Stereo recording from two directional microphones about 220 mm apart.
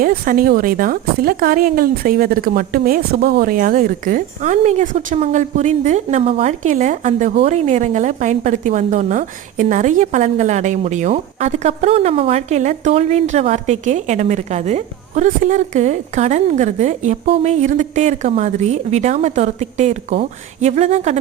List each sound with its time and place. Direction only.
0.0 s speech: 40° right (ahead or behind)